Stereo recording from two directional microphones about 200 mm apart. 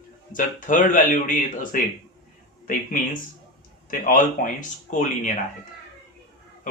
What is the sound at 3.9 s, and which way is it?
Speech, 45° left (ahead or behind).